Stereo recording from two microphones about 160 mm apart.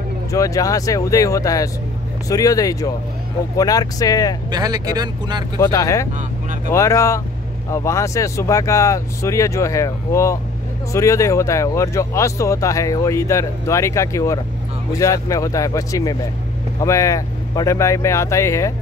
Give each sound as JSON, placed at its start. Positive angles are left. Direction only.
{"t": 0.3, "sound": "speech", "side_deg": 20}
{"t": 4.5, "sound": "speech", "side_deg": -25}
{"t": 5.6, "sound": "speech", "side_deg": 20}